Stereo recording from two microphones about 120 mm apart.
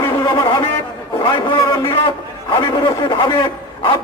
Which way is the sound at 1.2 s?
40° left (ahead or behind).